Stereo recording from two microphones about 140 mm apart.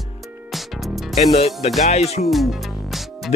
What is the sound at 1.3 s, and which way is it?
Speech, 45° left (ahead or behind).